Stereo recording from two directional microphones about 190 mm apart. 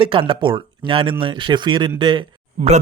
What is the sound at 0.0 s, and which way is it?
A man's voice, 25° right (ahead or behind).